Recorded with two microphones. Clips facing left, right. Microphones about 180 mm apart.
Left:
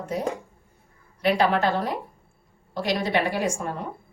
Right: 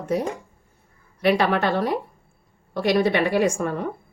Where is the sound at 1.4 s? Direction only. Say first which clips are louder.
Right 1 dB; 65° right (ahead or behind).